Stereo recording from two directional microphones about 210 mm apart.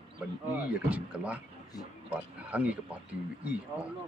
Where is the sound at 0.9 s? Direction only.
5° right (ahead or behind).